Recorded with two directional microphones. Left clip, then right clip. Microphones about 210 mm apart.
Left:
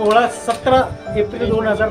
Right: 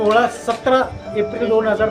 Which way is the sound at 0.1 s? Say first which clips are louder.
Left 2 dB; centre (ahead or behind).